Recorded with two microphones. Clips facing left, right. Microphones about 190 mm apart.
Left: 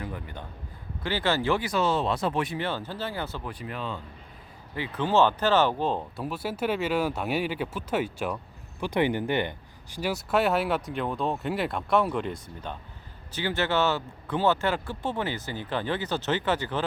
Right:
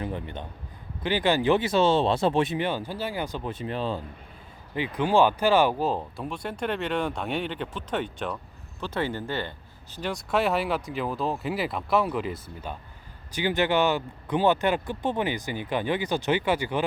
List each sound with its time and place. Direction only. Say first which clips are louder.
0.0 s a man's voice: right 4 dB; 25° right (ahead or behind)
4.7 s speech: right 2 dB; 15° right (ahead or behind)
13.3 s speech: right 3 dB; 15° right (ahead or behind)